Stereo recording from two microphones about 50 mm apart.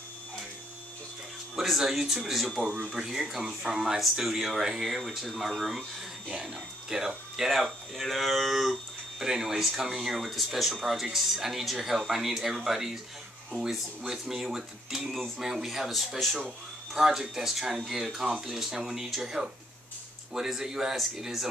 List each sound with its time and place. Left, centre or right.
1.6 s speech: centre
2.6 s speech: centre
6.3 s speech: centre
15.1 s speech: centre